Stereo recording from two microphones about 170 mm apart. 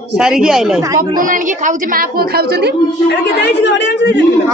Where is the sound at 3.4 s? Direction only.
90° left.